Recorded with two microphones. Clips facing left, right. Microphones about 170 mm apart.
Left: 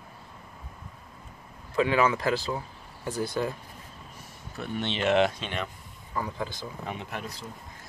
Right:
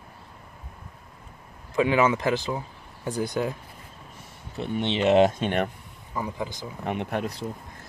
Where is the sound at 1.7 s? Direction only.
20° right (ahead or behind).